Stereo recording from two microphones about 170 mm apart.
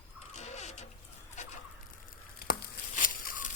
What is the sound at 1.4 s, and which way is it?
Fowl, 45° left (ahead or behind).